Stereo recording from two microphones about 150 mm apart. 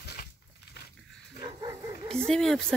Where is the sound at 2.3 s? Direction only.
5° left (ahead or behind).